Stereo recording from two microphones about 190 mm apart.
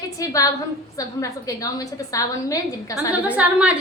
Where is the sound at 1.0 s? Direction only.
20° left (ahead or behind).